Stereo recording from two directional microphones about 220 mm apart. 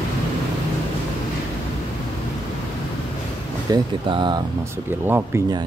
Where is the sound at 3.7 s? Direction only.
20° right (ahead or behind).